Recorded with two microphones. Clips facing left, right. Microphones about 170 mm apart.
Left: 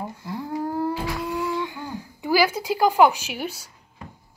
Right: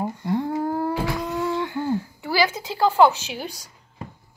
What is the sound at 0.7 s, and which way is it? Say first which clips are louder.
Humming: right 1 dB; 30° right (ahead or behind).